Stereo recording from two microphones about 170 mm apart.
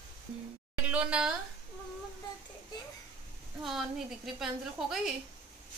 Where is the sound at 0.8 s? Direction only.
5° right (ahead or behind).